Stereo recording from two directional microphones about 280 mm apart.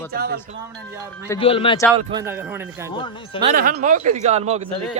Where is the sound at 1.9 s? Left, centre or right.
Centre.